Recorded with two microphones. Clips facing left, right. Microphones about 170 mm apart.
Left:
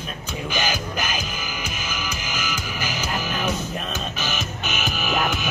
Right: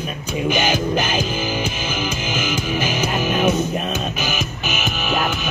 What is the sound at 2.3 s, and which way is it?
Music, 25° right (ahead or behind).